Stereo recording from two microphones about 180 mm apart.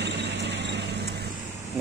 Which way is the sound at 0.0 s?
70° right (ahead or behind).